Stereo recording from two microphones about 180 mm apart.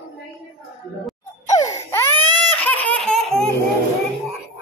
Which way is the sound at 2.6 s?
10° left (ahead or behind).